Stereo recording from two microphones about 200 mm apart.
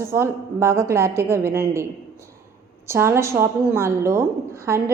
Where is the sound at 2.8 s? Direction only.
15° right (ahead or behind).